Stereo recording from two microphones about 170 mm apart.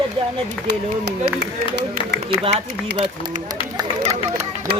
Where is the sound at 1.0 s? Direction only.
85° right.